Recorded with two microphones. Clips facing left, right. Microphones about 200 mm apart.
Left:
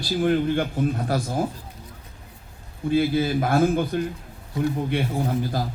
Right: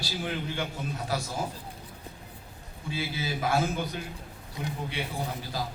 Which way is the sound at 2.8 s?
55° left (ahead or behind).